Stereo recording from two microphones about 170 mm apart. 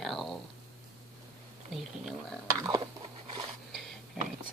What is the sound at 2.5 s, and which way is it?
Speech, 20° right (ahead or behind).